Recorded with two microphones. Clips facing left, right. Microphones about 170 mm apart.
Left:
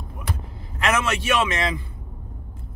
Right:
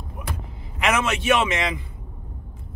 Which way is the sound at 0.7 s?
15° right (ahead or behind).